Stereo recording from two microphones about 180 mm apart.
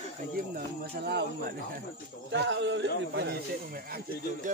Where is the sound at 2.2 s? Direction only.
85° right.